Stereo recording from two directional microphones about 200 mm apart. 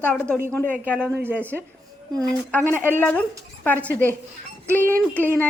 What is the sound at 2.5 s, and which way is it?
Speech, 10° left (ahead or behind).